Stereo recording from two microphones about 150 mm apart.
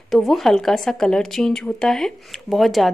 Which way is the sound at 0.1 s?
Centre (ahead or behind).